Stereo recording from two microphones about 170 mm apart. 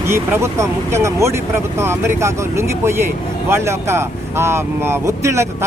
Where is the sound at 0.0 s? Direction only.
15° right (ahead or behind).